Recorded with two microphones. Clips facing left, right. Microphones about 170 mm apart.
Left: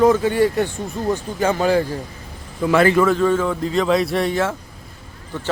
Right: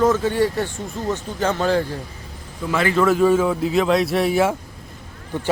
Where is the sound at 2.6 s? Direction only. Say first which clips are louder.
Left 6 dB; 70° left (ahead or behind).